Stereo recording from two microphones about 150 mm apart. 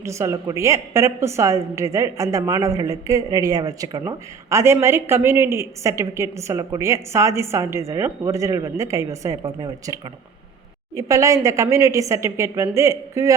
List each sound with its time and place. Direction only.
0.0 s a woman's voice: 20° right (ahead or behind)